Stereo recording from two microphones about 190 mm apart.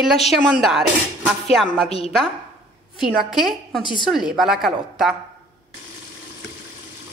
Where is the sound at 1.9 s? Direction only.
35° left (ahead or behind).